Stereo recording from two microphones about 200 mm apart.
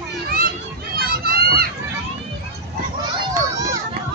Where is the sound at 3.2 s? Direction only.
15° right (ahead or behind).